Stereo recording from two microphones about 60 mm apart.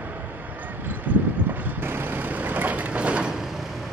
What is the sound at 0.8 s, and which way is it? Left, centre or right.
Vehicle, right.